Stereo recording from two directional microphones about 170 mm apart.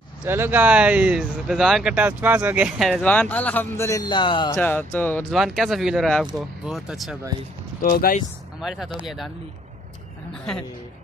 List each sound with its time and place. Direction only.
0.2 s speech: 10° right (ahead or behind); by 4.6 s 30° left (ahead or behind)
4.6 s speech: 10° left (ahead or behind)
5.3 s speech: centre (ahead or behind)
7.8 s speech: 60° left (ahead or behind)
8.5 s speech: centre (ahead or behind)